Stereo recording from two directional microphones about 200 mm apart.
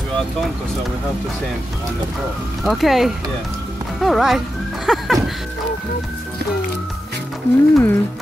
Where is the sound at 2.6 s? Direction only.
Centre (ahead or behind).